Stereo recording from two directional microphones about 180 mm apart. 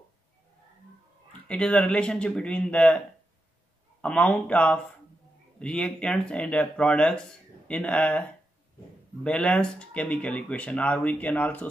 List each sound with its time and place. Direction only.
1.5 s speech: 5° left (ahead or behind)
4.0 s speech: 5° left (ahead or behind)